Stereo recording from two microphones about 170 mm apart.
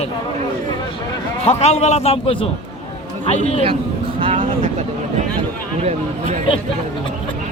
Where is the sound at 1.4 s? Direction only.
40° left (ahead or behind).